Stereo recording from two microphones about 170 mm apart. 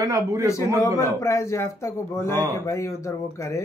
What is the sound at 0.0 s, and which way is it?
A man's voice, 20° right (ahead or behind).